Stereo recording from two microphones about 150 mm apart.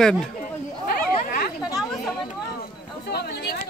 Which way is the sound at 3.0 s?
90° left.